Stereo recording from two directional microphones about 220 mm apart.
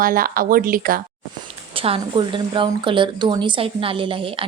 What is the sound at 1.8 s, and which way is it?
A woman's voice, 25° right (ahead or behind).